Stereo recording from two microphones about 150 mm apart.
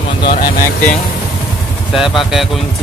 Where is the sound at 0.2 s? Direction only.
75° left (ahead or behind).